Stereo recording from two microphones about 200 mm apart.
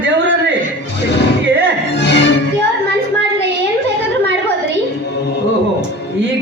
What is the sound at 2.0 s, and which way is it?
Music, 60° left (ahead or behind).